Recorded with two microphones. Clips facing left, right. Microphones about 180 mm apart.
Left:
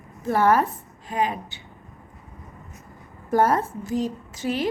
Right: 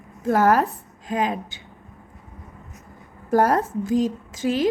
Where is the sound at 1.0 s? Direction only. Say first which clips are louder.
Right 1 dB; 90° right.